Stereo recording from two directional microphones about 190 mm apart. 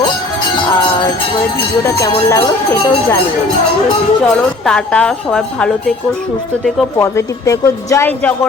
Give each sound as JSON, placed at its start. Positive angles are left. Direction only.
{"t": 1.8, "sound": "speech", "side_deg": 15}
{"t": 4.6, "sound": "a woman's voice", "side_deg": 5}
{"t": 7.0, "sound": "speech", "side_deg": 15}